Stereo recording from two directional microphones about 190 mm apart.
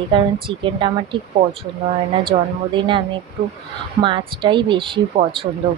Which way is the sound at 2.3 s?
25° right (ahead or behind).